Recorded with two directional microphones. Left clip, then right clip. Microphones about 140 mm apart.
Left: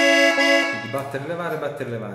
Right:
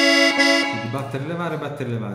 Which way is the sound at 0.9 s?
25° right (ahead or behind).